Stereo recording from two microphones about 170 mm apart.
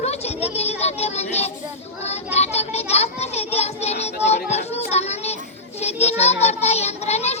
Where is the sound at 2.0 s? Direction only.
40° left (ahead or behind).